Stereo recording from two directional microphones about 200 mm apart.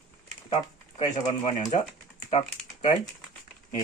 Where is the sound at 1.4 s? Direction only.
35° left (ahead or behind).